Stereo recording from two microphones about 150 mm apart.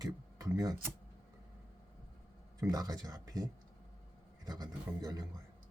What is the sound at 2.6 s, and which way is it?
Speech, 25° right (ahead or behind).